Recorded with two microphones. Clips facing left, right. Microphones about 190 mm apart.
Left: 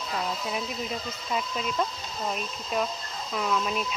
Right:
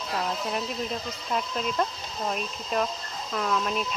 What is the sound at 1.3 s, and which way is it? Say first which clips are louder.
Speech: right 1 dB; centre (ahead or behind).